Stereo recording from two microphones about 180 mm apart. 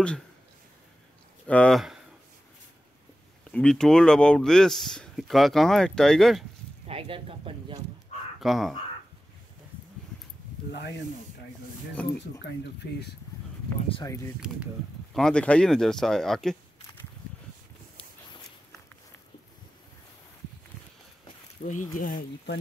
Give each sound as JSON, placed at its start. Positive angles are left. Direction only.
{"t": 1.5, "sound": "speech", "side_deg": 5}
{"t": 3.5, "sound": "speech", "side_deg": 5}
{"t": 6.9, "sound": "speech", "side_deg": -30}
{"t": 8.4, "sound": "speech", "side_deg": 0}
{"t": 12.8, "sound": "speech", "side_deg": 65}
{"t": 13.7, "sound": "speech", "side_deg": 30}
{"t": 14.0, "sound": "speech", "side_deg": 15}
{"t": 15.1, "sound": "speech", "side_deg": 5}
{"t": 21.6, "sound": "speech", "side_deg": 45}